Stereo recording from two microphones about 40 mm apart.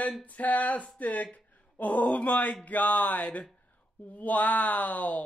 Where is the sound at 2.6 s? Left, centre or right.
Left.